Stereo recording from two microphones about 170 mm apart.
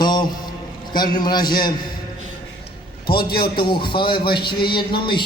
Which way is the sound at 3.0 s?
65° left (ahead or behind).